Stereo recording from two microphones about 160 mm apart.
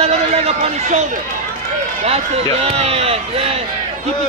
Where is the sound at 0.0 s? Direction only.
40° right (ahead or behind).